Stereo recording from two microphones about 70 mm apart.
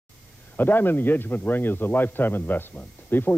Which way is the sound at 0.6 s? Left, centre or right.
Left.